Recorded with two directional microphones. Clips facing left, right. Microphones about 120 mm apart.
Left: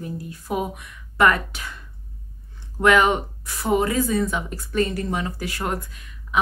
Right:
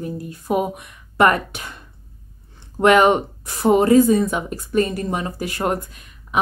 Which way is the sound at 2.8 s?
25° right (ahead or behind).